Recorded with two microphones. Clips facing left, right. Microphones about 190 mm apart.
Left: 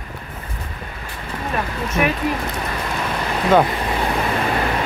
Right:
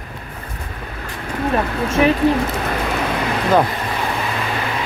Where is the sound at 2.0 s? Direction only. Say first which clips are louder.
Right 6 dB; 30° right (ahead or behind).